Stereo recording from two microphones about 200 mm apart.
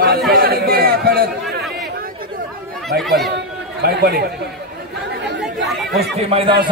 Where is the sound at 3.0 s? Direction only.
Centre (ahead or behind).